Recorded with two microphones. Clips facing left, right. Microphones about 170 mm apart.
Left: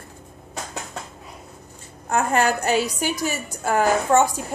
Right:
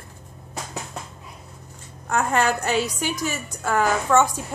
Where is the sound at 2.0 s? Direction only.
35° left (ahead or behind).